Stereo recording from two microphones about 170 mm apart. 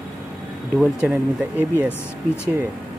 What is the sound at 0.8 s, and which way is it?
Speech, 5° right (ahead or behind).